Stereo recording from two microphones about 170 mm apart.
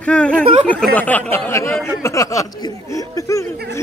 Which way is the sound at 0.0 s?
5° left (ahead or behind).